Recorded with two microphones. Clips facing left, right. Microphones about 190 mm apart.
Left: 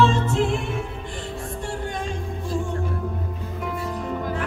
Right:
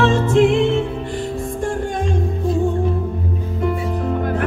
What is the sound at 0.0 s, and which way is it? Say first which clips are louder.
Music: right 6 dB; 85° right.